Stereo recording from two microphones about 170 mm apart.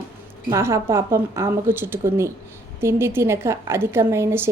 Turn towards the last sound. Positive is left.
turn(degrees=-15)  # may be behind; listen again after turning